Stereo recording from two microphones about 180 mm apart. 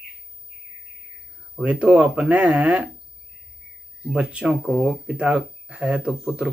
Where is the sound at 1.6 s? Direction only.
5° right (ahead or behind).